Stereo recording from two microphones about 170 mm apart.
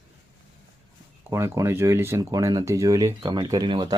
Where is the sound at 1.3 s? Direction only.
20° right (ahead or behind).